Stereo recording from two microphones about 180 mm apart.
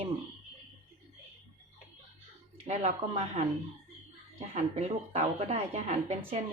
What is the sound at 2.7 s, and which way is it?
A woman's voice, 35° right (ahead or behind).